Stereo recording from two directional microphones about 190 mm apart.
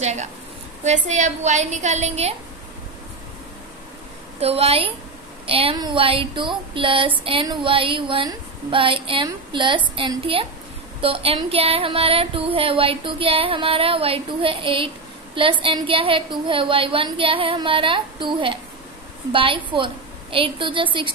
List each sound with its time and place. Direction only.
0.0 s a woman's voice: 35° right (ahead or behind)
4.4 s a woman's voice: 30° right (ahead or behind)
5.5 s music: 30° right (ahead or behind)